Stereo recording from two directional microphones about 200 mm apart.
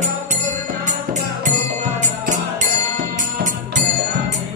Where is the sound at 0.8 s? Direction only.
40° right (ahead or behind).